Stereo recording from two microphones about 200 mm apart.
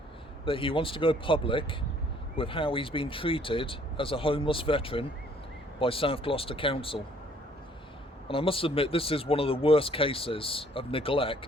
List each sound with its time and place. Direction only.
0.4 s speech: 25° left (ahead or behind)
8.3 s speech: 25° left (ahead or behind)